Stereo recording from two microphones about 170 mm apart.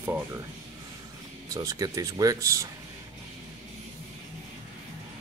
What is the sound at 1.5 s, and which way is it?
Speech, 20° right (ahead or behind).